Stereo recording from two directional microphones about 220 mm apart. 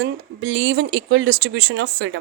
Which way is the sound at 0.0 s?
55° right (ahead or behind).